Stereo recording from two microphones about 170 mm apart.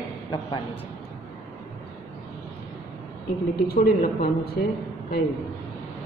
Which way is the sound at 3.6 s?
60° left (ahead or behind).